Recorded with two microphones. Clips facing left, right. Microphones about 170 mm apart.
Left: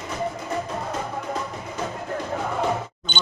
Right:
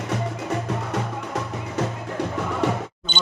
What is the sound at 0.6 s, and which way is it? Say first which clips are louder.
Music: right 2 dB; 75° right (ahead or behind).